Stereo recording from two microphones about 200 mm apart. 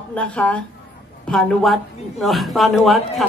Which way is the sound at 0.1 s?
5° left (ahead or behind).